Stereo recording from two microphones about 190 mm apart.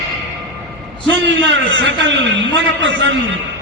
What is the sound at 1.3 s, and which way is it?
A man's voice, 75° right (ahead or behind).